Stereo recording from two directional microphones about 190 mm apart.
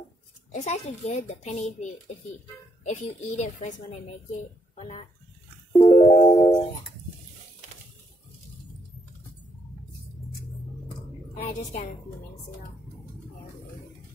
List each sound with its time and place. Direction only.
0.5 s a child's voice: 35° left (ahead or behind)
5.8 s music: 35° left (ahead or behind)
11.4 s a woman's voice: 35° left (ahead or behind)